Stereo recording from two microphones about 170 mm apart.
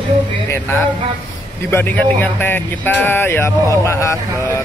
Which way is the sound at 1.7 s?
10° left (ahead or behind).